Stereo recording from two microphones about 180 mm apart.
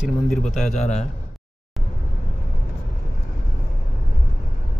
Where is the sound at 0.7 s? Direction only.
40° left (ahead or behind).